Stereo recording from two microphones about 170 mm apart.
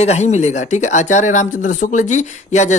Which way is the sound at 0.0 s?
40° left (ahead or behind).